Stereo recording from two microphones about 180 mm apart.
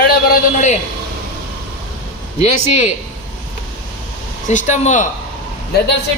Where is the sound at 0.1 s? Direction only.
50° left (ahead or behind).